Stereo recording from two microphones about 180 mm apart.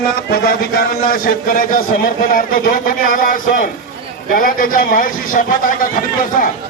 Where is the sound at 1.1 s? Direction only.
50° left (ahead or behind).